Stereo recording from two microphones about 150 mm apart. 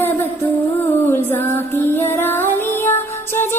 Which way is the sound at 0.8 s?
15° left (ahead or behind).